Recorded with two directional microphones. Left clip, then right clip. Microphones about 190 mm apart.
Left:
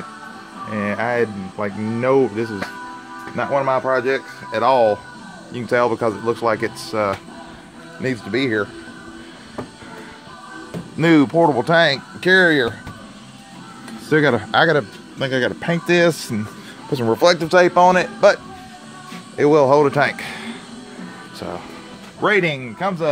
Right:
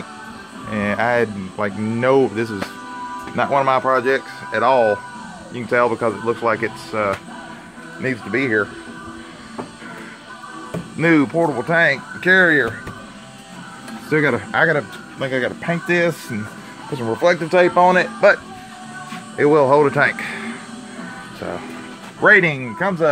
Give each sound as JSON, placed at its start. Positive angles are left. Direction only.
{"t": 0.7, "sound": "speech", "side_deg": 5}
{"t": 4.5, "sound": "speech", "side_deg": 25}
{"t": 11.0, "sound": "speech", "side_deg": 25}
{"t": 14.0, "sound": "speech", "side_deg": 40}
{"t": 17.5, "sound": "a man's voice", "side_deg": 20}
{"t": 22.2, "sound": "speech", "side_deg": 10}